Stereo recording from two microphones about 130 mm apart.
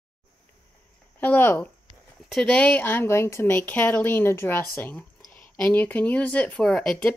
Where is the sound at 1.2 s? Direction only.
15° left (ahead or behind).